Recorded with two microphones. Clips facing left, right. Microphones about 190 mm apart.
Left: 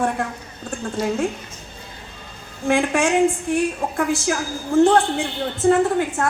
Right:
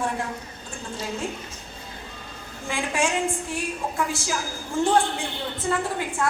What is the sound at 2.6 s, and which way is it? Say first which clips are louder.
A woman's voice: left 8 dB; 60° left (ahead or behind).